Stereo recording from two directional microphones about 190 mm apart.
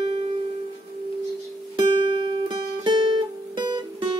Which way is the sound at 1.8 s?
25° right (ahead or behind).